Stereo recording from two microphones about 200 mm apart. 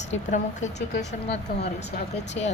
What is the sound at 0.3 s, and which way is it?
Speech, 40° left (ahead or behind).